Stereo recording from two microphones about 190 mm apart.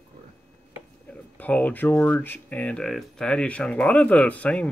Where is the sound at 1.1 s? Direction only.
10° left (ahead or behind).